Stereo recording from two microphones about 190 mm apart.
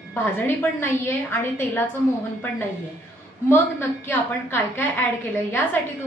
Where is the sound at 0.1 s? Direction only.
10° left (ahead or behind).